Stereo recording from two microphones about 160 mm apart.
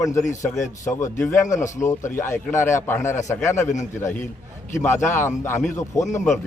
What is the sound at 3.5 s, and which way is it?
Speech, 50° left (ahead or behind).